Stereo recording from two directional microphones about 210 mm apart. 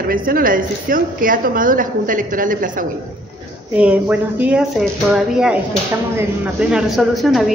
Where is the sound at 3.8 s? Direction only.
5° right (ahead or behind).